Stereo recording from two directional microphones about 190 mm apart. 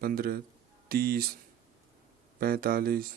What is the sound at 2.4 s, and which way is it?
Speech, 50° right (ahead or behind).